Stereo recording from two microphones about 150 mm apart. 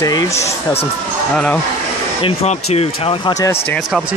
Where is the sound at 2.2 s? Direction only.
45° left (ahead or behind).